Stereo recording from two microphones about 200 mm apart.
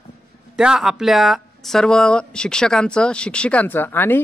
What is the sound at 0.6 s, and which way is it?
Speech, 5° right (ahead or behind).